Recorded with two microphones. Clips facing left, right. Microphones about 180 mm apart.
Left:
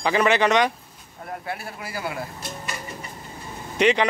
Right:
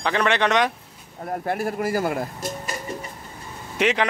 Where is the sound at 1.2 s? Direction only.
40° right (ahead or behind).